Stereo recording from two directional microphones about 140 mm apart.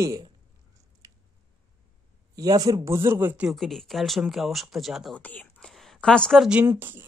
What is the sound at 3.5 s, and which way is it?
Speech, centre (ahead or behind).